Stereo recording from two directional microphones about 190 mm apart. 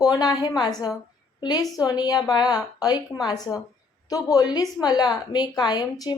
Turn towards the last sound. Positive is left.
turn(degrees=20)  # may be behind; listen again after turning